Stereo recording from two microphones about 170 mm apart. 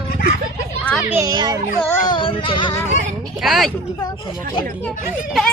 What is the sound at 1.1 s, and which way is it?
Speech, 20° right (ahead or behind).